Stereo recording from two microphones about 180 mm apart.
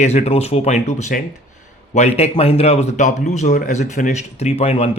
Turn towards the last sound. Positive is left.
turn(degrees=35)  # may be behind; listen again after turning